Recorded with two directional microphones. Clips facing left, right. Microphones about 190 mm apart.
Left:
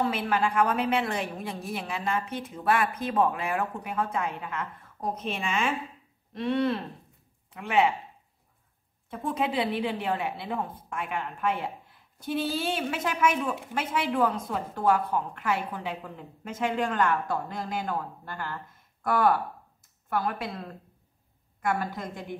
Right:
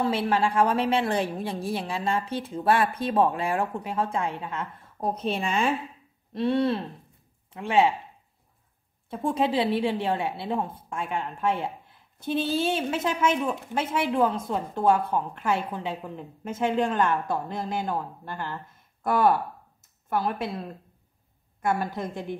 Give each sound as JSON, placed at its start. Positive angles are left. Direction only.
{"t": 0.1, "sound": "a woman's voice", "side_deg": -30}
{"t": 9.1, "sound": "a woman's voice", "side_deg": -30}